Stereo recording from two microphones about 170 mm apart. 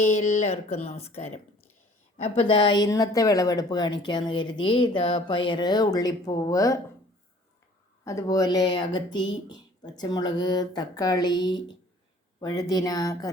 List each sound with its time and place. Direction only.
0.0 s speech: 40° left (ahead or behind); by 6.7 s 20° left (ahead or behind)
8.0 s speech: 20° left (ahead or behind)